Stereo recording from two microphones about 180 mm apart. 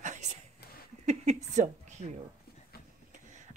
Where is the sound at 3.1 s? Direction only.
40° right (ahead or behind).